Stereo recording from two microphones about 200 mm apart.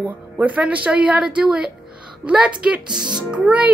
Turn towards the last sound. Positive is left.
turn(degrees=-5)  # may be behind; listen again after turning